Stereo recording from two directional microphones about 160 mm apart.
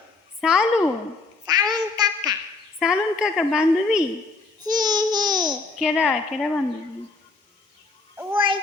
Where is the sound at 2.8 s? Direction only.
5° right (ahead or behind).